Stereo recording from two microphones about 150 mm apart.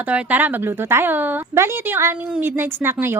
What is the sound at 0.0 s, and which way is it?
A woman's voice, 10° right (ahead or behind).